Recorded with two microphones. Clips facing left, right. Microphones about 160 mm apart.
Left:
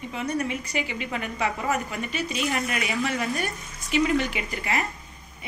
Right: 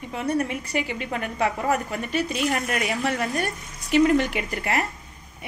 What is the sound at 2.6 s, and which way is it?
A woman's voice, 50° right (ahead or behind).